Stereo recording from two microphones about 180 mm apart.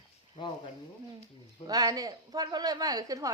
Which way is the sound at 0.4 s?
25° left (ahead or behind).